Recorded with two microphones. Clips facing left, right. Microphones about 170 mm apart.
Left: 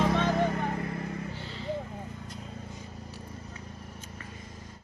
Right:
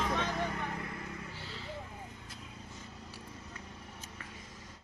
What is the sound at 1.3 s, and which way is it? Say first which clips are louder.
Vehicle: left 6 dB; 5° right (ahead or behind).